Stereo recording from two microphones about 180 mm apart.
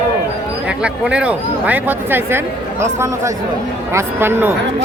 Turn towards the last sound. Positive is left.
turn(degrees=-15)  # may be behind; listen again after turning